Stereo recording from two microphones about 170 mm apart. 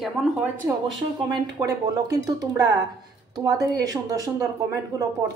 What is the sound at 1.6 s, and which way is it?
Speech, 20° right (ahead or behind).